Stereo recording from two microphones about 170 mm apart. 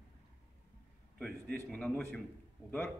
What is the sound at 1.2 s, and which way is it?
A man's voice, 5° left (ahead or behind).